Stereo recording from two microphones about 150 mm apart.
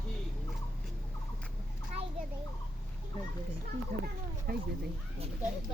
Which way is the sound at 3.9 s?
60° right (ahead or behind).